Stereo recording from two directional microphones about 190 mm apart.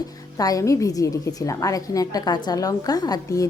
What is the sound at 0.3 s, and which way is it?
A woman's voice, 20° left (ahead or behind).